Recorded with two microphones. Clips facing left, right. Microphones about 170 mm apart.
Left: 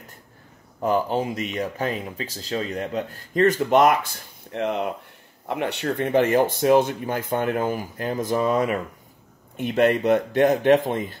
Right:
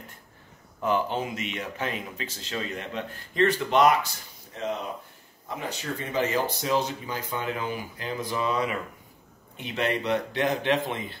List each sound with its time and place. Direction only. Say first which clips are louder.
0.7 s speech: left 4 dB; 40° left (ahead or behind)